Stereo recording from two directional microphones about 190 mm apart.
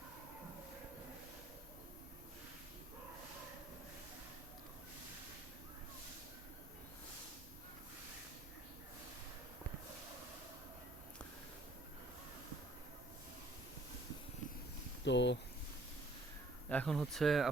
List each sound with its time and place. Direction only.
15.0 s speech: 70° left (ahead or behind)
16.6 s speech: 5° left (ahead or behind)